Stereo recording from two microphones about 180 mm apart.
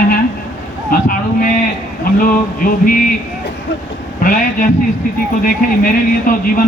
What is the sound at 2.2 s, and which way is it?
Speech, 50° left (ahead or behind).